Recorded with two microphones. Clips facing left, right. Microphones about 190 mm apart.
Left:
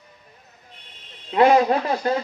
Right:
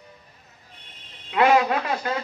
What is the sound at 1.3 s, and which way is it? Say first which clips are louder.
Speech: left 3 dB; 35° left (ahead or behind).